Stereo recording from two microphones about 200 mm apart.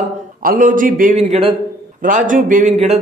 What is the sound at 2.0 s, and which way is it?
Speech, 40° right (ahead or behind).